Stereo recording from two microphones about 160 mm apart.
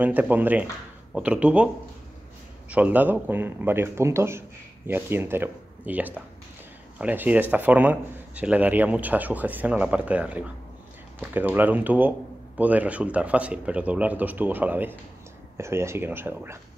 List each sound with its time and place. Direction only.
0.0 s a man's voice: 10° right (ahead or behind)
2.7 s a man's voice: 10° right (ahead or behind)